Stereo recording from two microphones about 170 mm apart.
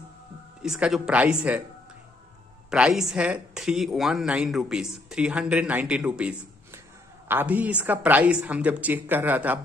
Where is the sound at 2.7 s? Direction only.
5° right (ahead or behind).